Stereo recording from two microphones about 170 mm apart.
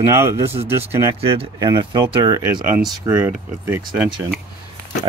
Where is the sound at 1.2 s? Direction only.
35° right (ahead or behind).